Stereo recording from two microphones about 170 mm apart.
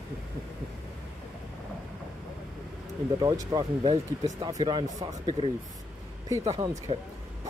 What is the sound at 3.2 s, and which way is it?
Speech, 20° right (ahead or behind).